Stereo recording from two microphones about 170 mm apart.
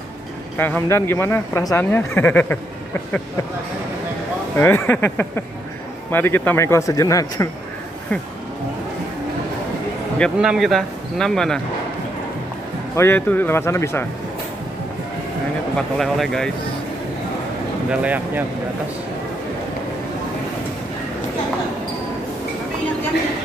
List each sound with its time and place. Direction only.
0.6 s speech: 10° left (ahead or behind)
4.6 s speech: 10° left (ahead or behind)
10.1 s a man's voice: centre (ahead or behind)
12.9 s speech: 15° left (ahead or behind)
16.0 s a man's voice: centre (ahead or behind)
17.8 s speech: 10° right (ahead or behind)